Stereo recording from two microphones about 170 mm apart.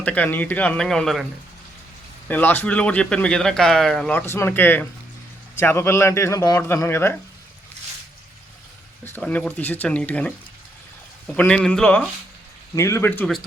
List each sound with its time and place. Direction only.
0.0 s speech: 10° left (ahead or behind)
9.0 s speech: 10° left (ahead or behind)
11.3 s a man's voice: 5° left (ahead or behind)
12.7 s speech: 15° left (ahead or behind)